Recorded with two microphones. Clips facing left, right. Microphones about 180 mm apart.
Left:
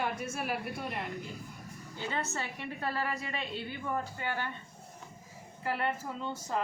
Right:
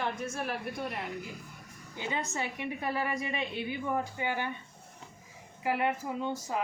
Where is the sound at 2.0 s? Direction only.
15° right (ahead or behind).